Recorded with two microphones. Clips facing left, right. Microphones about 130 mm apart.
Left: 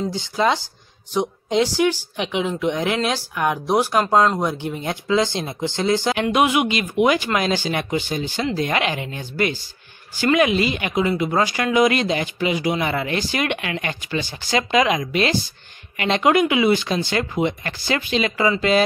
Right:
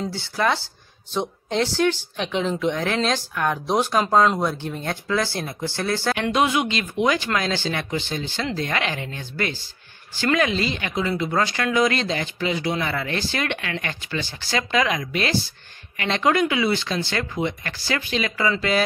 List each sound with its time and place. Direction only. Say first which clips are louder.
0.1 s speech: left 2 dB; 15° left (ahead or behind)